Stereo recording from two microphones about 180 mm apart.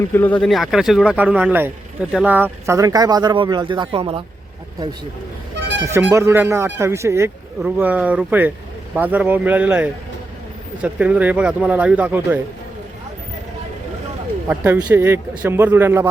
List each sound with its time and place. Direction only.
0.1 s speech: 10° left (ahead or behind); by 4.2 s 30° right (ahead or behind)
5.8 s speech: 10° right (ahead or behind)
14.5 s speech: 10° right (ahead or behind)